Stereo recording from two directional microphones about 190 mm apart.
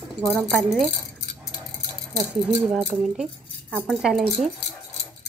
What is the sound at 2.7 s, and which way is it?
Speech, centre (ahead or behind).